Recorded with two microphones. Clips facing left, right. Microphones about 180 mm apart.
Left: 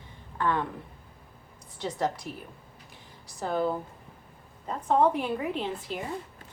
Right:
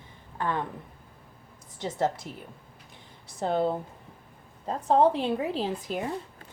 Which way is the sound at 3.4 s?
25° right (ahead or behind).